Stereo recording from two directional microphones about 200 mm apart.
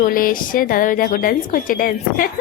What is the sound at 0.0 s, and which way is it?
A woman's voice, 45° left (ahead or behind).